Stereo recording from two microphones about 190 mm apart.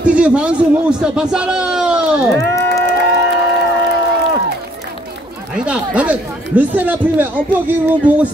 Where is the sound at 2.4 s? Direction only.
15° left (ahead or behind).